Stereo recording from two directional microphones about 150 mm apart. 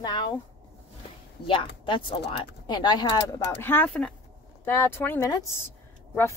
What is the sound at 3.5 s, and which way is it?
A woman's voice, 15° left (ahead or behind).